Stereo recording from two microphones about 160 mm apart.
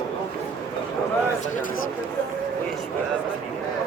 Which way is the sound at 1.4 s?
55° left (ahead or behind).